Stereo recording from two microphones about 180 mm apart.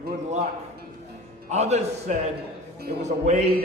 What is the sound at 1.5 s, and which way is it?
A man's voice, 40° right (ahead or behind).